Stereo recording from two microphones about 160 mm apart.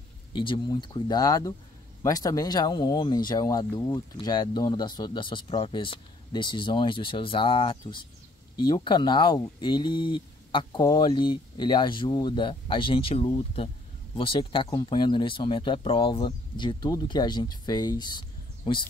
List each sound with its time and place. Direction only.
0.4 s speech: 30° left (ahead or behind)